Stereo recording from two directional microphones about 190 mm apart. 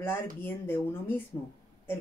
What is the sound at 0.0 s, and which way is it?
Speech, 10° left (ahead or behind).